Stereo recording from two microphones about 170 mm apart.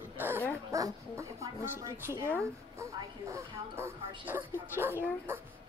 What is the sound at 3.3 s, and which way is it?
Speech, 15° right (ahead or behind).